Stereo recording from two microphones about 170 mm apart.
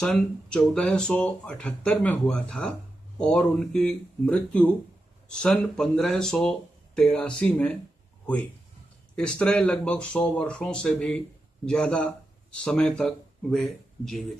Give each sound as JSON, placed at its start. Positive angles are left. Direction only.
{"t": 0.0, "sound": "speech", "side_deg": 5}
{"t": 9.4, "sound": "speech", "side_deg": 5}